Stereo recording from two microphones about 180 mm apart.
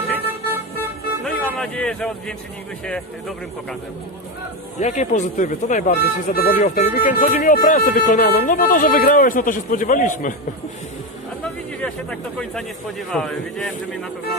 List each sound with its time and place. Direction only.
0.7 s vehicle: 5° left (ahead or behind)
2.8 s speech: 5° left (ahead or behind)
4.7 s speech: 40° left (ahead or behind)
11.4 s speech: 5° left (ahead or behind)